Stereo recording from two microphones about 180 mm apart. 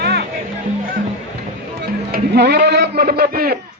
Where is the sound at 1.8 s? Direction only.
70° right (ahead or behind).